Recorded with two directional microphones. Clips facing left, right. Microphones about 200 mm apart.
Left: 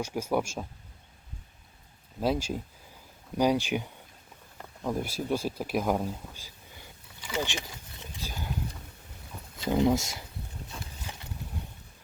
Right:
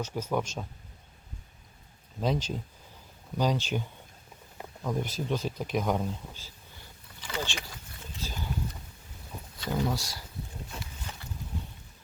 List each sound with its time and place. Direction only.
0.0 s speech: 10° left (ahead or behind)
2.2 s speech: 5° left (ahead or behind)
4.9 s speech: 5° left (ahead or behind)
7.3 s a sound: 15° left (ahead or behind)
9.6 s speech: 20° left (ahead or behind)
11.1 s a sound: 15° left (ahead or behind)